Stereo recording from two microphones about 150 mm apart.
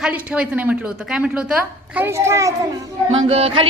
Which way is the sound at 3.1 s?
40° right (ahead or behind).